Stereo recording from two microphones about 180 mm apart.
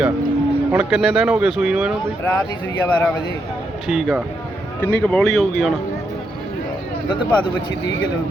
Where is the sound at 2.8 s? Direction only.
5° left (ahead or behind).